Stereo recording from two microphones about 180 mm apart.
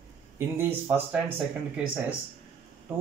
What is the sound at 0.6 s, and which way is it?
Speech, 10° right (ahead or behind).